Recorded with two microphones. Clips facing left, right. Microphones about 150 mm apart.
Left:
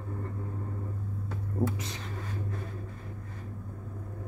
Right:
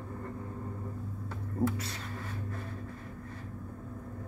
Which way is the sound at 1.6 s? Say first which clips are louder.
Right 1 dB; 20° left (ahead or behind).